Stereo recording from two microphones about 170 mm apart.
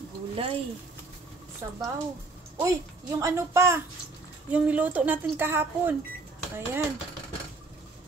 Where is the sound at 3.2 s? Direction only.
15° right (ahead or behind).